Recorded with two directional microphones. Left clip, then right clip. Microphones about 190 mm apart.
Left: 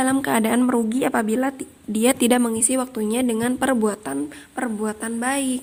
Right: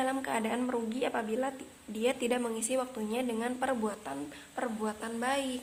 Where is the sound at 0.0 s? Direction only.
50° left (ahead or behind).